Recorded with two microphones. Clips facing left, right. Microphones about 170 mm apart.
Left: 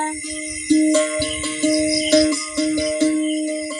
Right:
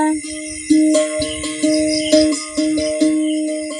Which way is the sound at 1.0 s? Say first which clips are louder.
Right 3 dB; 15° right (ahead or behind).